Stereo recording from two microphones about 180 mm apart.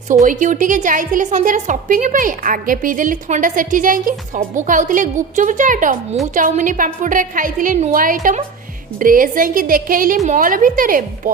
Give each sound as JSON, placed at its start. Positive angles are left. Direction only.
{"t": 0.1, "sound": "a woman's voice", "side_deg": -45}